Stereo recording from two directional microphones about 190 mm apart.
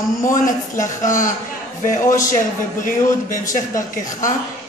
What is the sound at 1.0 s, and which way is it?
Speech, 45° left (ahead or behind).